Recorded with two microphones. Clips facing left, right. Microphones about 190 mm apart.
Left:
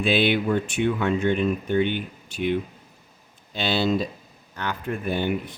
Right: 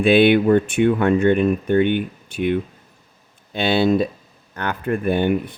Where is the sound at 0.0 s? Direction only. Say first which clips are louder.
Right 8 dB; 55° right (ahead or behind).